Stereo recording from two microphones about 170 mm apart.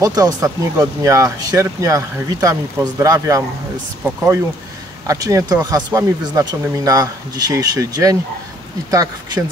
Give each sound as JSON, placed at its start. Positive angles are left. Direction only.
{"t": 0.0, "sound": "speech", "side_deg": -20}